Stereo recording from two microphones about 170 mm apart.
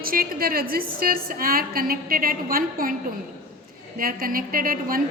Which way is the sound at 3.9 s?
55° right (ahead or behind).